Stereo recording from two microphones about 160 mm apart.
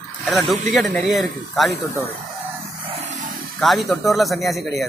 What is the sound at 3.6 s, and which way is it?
Speech, centre (ahead or behind).